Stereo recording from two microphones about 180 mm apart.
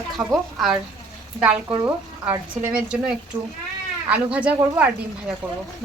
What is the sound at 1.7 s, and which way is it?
Speech, 20° right (ahead or behind).